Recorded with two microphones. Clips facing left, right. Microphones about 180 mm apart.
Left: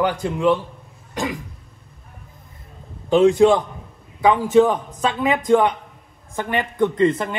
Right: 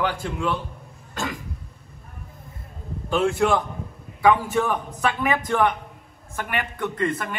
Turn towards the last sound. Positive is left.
turn(degrees=20)  # may be behind; listen again after turning